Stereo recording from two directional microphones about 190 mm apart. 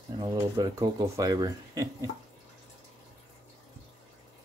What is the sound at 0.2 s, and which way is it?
Speech, 20° right (ahead or behind).